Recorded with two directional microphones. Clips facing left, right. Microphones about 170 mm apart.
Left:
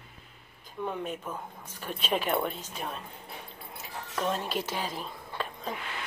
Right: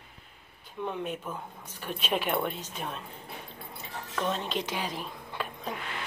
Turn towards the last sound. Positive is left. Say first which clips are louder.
# even
turn(degrees=-10)  # may be behind; listen again after turning